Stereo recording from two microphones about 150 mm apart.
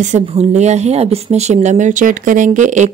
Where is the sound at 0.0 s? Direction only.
50° right (ahead or behind).